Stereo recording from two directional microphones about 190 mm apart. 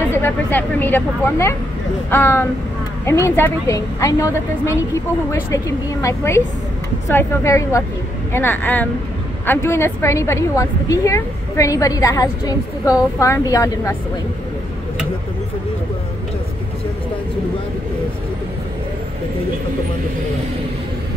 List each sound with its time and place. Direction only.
0.2 s a woman's voice: 10° left (ahead or behind)